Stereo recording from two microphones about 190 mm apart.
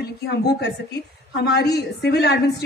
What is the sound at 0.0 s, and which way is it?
A man's voice, 60° left (ahead or behind).